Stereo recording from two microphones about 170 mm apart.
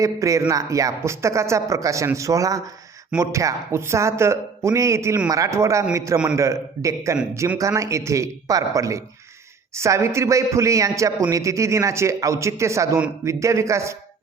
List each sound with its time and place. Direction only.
0.0 s a man's voice: 20° right (ahead or behind)